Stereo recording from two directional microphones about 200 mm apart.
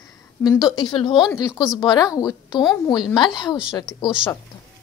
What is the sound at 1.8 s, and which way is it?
Speech, 20° left (ahead or behind).